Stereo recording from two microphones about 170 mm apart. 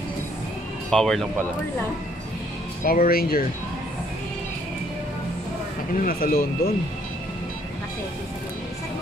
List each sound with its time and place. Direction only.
0.8 s speech: 5° left (ahead or behind)
2.8 s speech: 60° left (ahead or behind)
5.9 s speech: 55° left (ahead or behind)